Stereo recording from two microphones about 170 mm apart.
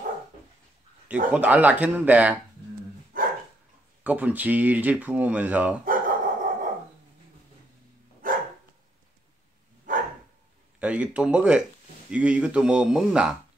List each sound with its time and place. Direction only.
1.3 s speech: 10° right (ahead or behind)
3.1 s dog: 55° right (ahead or behind)
4.0 s speech: 10° right (ahead or behind)
5.9 s dog: 55° right (ahead or behind)
8.2 s dog: 55° right (ahead or behind)
9.9 s dog: 50° right (ahead or behind)
10.8 s speech: 5° right (ahead or behind)